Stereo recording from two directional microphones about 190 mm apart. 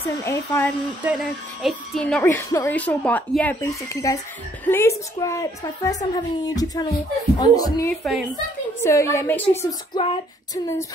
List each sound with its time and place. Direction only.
0.0 s speech: 15° left (ahead or behind)
1.0 s speech: centre (ahead or behind); by 5.9 s 20° left (ahead or behind)
6.1 s female singing: 20° left (ahead or behind)
7.9 s a woman's voice: centre (ahead or behind)
8.8 s speech: 15° left (ahead or behind)
9.7 s female singing: 25° left (ahead or behind)